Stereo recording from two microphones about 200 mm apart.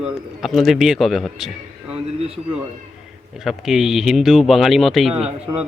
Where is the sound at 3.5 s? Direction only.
Centre (ahead or behind).